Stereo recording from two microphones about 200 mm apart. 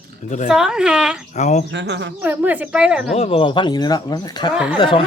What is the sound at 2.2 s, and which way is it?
Speech, 10° right (ahead or behind).